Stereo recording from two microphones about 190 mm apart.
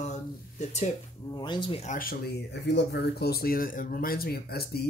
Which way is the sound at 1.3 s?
25° left (ahead or behind).